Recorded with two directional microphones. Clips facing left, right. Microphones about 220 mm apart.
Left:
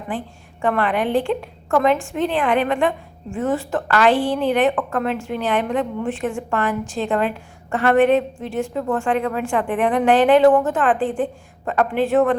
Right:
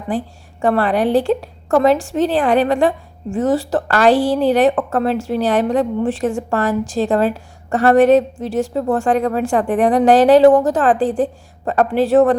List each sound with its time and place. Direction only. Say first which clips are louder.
0.6 s speech: right 4 dB; 35° right (ahead or behind)